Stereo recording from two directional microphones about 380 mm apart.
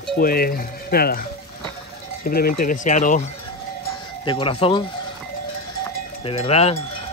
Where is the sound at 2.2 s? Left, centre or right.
Left.